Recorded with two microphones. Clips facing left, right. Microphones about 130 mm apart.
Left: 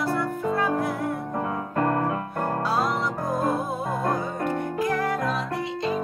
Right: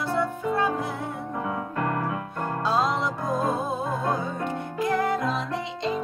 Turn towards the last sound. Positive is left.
turn(degrees=-25)  # may be behind; listen again after turning